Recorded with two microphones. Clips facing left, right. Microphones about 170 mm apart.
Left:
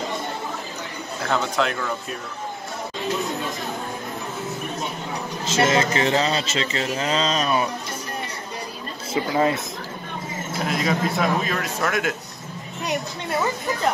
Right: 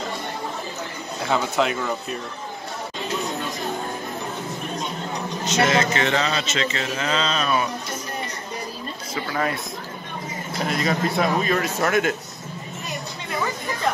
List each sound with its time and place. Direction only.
1.2 s speech: 5° right (ahead or behind)
5.4 s speech: 30° left (ahead or behind)
9.1 s speech: 25° left (ahead or behind)
10.5 s speech: centre (ahead or behind)